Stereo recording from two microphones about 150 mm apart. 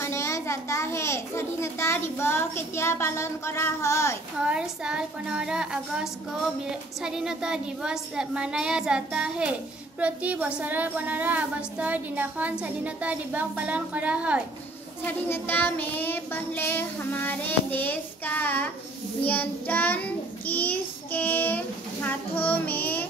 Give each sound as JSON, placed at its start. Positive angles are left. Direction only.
{"t": 0.0, "sound": "a child's voice", "side_deg": 20}
{"t": 4.4, "sound": "a woman's voice", "side_deg": -5}
{"t": 15.0, "sound": "a child's voice", "side_deg": 15}